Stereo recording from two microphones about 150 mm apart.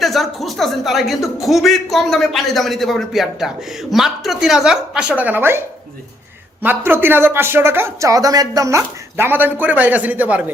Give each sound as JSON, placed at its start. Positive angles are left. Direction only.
{"t": 0.0, "sound": "a man's voice", "side_deg": 0}